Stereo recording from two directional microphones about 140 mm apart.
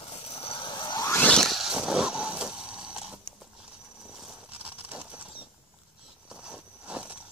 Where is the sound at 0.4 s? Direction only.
40° left (ahead or behind).